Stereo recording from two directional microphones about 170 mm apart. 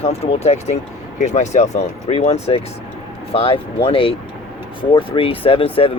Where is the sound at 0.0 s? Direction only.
40° left (ahead or behind).